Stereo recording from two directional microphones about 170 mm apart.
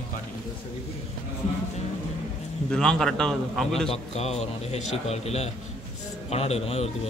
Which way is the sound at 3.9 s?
40° left (ahead or behind).